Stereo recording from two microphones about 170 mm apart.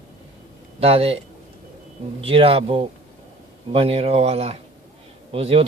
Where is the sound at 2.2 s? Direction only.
35° right (ahead or behind).